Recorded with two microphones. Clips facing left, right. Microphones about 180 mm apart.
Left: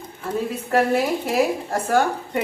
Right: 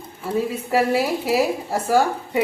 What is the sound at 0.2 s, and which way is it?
A woman's voice, 10° right (ahead or behind).